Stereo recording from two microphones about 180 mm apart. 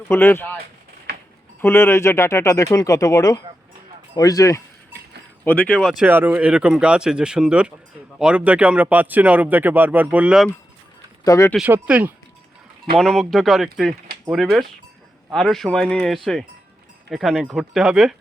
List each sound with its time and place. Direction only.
0.1 s speech: 15° left (ahead or behind)
1.6 s speech: 15° left (ahead or behind)
6.1 s speech: 10° right (ahead or behind)
11.2 s speech: 15° left (ahead or behind)
11.5 s speech: 5° right (ahead or behind)
13.0 s speech: centre (ahead or behind)